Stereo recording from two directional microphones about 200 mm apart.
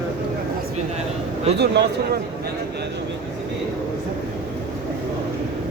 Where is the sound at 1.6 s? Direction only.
55° right (ahead or behind).